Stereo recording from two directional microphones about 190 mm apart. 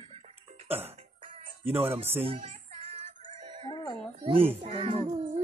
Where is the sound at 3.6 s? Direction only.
20° left (ahead or behind).